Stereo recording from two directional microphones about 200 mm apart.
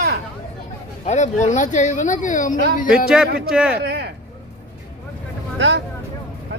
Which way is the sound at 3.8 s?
55° right (ahead or behind).